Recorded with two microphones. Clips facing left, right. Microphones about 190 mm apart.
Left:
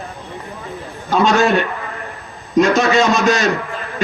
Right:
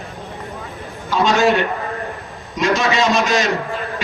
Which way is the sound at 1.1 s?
50° left (ahead or behind).